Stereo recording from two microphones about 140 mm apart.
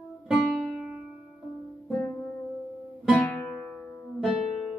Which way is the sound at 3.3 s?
10° left (ahead or behind).